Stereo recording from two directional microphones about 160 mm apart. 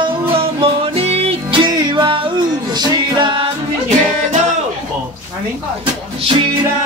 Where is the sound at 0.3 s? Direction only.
35° right (ahead or behind).